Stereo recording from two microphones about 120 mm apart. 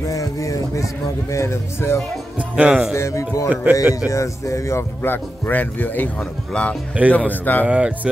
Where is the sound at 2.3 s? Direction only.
10° right (ahead or behind).